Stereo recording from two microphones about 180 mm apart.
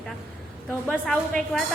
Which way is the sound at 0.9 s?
5° left (ahead or behind).